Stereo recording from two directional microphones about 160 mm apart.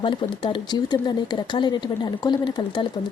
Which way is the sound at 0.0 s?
30° left (ahead or behind).